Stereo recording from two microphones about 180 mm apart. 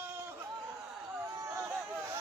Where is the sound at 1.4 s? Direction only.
15° right (ahead or behind).